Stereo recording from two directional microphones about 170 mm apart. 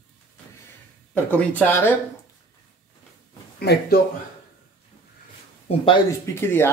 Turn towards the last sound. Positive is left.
turn(degrees=15)  # may be behind; listen again after turning